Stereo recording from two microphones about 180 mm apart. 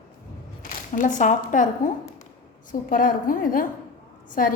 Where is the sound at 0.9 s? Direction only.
45° left (ahead or behind).